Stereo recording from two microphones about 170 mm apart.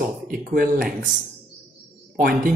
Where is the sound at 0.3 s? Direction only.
60° right (ahead or behind).